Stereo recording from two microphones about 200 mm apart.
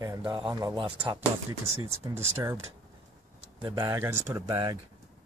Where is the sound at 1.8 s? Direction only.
15° right (ahead or behind).